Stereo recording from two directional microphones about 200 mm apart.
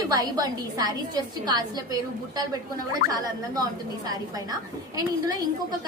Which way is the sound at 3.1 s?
20° right (ahead or behind).